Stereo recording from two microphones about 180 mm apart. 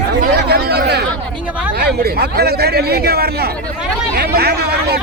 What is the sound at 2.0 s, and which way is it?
A man's voice, 60° right (ahead or behind).